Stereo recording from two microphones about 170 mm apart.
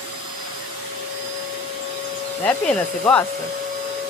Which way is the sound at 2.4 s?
10° left (ahead or behind).